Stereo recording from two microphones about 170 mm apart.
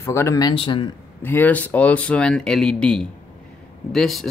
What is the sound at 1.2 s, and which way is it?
Speech, 10° left (ahead or behind).